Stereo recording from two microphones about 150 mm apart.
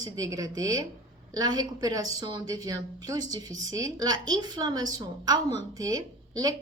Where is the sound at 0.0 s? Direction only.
25° right (ahead or behind).